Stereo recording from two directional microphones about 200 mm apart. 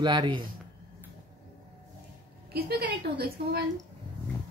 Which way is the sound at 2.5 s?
50° right (ahead or behind).